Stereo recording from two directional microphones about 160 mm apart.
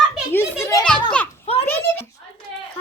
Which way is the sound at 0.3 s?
20° left (ahead or behind).